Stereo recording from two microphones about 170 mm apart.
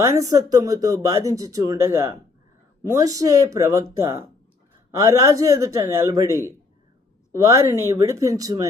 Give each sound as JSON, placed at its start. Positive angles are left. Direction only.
{"t": 0.0, "sound": "speech", "side_deg": -20}